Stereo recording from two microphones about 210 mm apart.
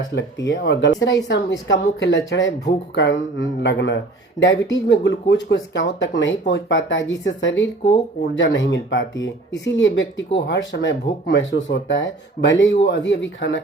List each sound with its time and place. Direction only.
0.0 s speech: 55° left (ahead or behind)